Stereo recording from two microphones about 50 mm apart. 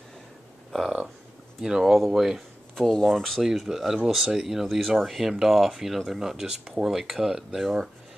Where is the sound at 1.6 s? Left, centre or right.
Centre.